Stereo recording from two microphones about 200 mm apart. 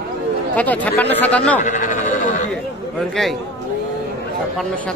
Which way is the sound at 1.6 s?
40° left (ahead or behind).